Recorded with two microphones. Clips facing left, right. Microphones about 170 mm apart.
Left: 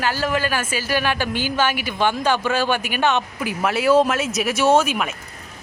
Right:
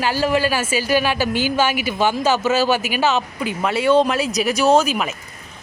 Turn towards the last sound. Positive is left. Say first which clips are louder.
# right 1 dB
turn(degrees=0)  # may be behind; listen again after turning